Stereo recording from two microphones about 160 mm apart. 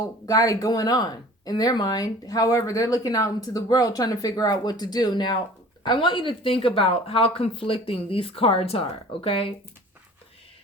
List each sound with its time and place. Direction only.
0.0 s speech: 20° left (ahead or behind)